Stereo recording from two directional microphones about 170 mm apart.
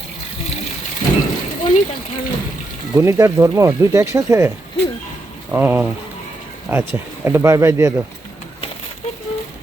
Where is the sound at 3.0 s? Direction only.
15° right (ahead or behind).